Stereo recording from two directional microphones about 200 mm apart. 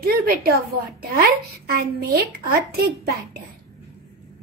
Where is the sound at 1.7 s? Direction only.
50° right (ahead or behind).